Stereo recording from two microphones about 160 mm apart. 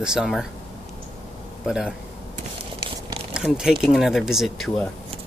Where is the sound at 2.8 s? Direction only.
30° right (ahead or behind).